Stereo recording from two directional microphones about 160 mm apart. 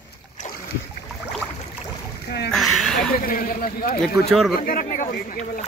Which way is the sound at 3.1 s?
65° left (ahead or behind).